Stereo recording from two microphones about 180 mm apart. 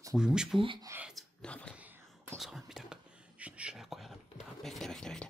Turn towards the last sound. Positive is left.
turn(degrees=5)  # may be behind; listen again after turning